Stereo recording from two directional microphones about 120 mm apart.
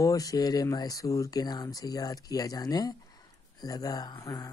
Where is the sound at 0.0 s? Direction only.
30° left (ahead or behind).